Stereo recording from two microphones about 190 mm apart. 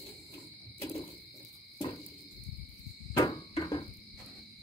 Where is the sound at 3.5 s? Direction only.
20° left (ahead or behind).